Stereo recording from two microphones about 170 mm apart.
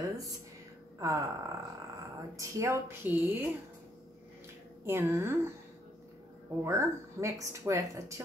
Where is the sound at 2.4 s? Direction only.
15° right (ahead or behind).